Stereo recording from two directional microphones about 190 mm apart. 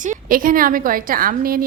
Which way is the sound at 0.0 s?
45° right (ahead or behind).